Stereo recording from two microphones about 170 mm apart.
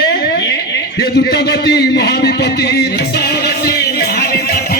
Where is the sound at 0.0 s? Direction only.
65° left (ahead or behind).